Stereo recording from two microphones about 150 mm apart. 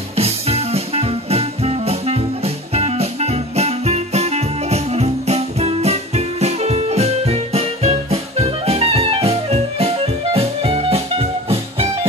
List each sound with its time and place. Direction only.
0.1 s music: 45° right (ahead or behind)